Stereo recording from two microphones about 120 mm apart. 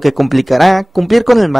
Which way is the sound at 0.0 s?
Centre (ahead or behind).